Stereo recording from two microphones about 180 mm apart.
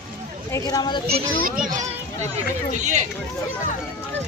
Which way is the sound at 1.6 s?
45° right (ahead or behind).